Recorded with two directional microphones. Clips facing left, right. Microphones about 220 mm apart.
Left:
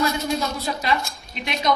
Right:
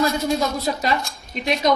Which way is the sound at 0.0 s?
35° right (ahead or behind).